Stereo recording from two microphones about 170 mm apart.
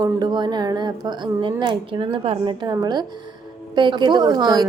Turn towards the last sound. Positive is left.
turn(degrees=-25)  # may be behind; listen again after turning